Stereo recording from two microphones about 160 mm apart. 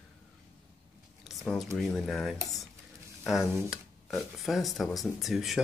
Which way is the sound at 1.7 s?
Centre (ahead or behind).